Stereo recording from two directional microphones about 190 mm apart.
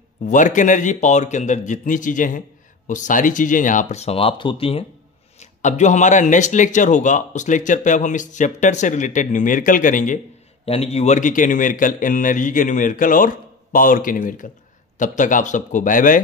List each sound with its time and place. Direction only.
0.2 s speech: 40° left (ahead or behind)